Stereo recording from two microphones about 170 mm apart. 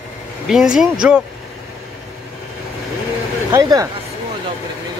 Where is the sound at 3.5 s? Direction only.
20° right (ahead or behind).